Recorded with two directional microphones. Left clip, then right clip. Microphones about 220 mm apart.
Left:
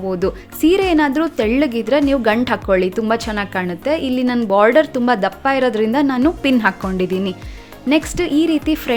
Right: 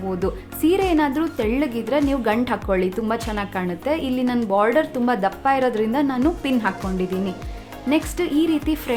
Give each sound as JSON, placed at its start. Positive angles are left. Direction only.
{"t": 0.1, "sound": "a woman's voice", "side_deg": 20}